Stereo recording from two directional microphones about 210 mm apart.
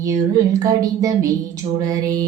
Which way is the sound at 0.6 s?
15° right (ahead or behind).